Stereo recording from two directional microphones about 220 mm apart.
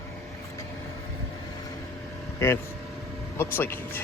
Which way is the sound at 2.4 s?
10° left (ahead or behind).